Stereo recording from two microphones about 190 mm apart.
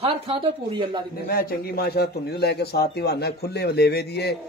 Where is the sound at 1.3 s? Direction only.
55° left (ahead or behind).